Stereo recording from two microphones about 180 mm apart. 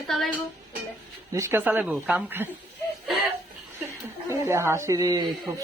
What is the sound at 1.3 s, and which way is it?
Speech, 15° right (ahead or behind).